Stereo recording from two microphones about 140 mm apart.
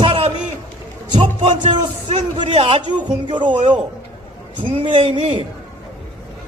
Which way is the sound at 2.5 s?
40° right (ahead or behind).